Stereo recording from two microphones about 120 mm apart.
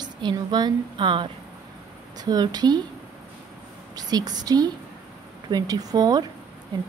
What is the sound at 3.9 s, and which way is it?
A woman's voice, 35° right (ahead or behind).